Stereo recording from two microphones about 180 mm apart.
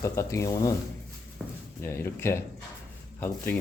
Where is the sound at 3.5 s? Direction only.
10° left (ahead or behind).